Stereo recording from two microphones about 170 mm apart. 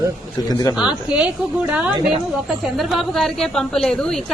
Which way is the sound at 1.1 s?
5° right (ahead or behind).